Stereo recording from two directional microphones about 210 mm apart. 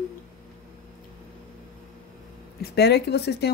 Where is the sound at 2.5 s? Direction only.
50° left (ahead or behind).